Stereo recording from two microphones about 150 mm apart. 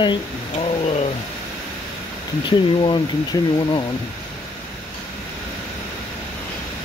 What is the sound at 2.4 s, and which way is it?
Speech, 30° left (ahead or behind).